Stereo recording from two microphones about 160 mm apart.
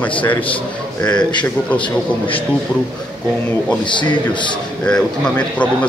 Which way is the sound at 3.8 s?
30° left (ahead or behind).